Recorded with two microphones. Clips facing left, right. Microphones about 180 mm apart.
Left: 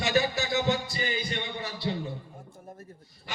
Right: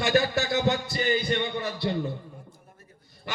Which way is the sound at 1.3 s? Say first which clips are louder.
Right 7 dB; 55° right (ahead or behind).